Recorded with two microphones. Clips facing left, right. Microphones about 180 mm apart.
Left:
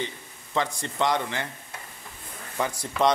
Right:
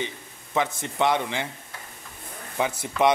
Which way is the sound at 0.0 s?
15° right (ahead or behind).